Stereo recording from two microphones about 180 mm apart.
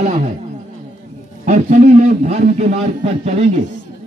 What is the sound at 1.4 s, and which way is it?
A man's voice, 50° right (ahead or behind).